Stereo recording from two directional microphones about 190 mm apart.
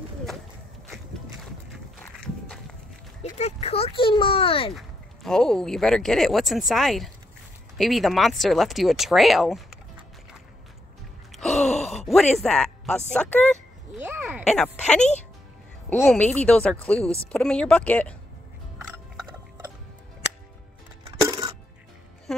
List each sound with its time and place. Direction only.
1.7 s walk: 5° left (ahead or behind)
3.2 s speech: 35° left (ahead or behind)
4.7 s speech: centre (ahead or behind)
11.3 s a sound: centre (ahead or behind)
14.0 s a sound: 10° right (ahead or behind)
14.4 s speech: 5° left (ahead or behind)
21.2 s coin: 20° right (ahead or behind)